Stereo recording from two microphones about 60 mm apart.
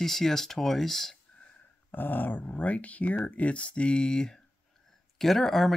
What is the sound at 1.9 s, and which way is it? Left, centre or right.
Speech, left.